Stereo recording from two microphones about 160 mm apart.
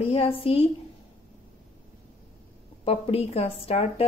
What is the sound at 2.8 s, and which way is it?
A woman's voice, 35° left (ahead or behind).